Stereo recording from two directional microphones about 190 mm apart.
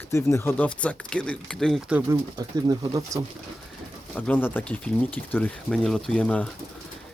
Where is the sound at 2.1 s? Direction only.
20° right (ahead or behind).